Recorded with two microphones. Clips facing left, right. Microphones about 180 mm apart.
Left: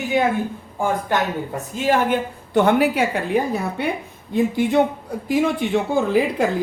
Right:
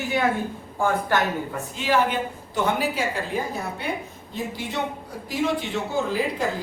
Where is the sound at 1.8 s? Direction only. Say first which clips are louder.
Left 4 dB; 60° left (ahead or behind).